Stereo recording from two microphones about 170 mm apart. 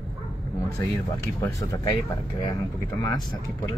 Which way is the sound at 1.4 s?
20° left (ahead or behind).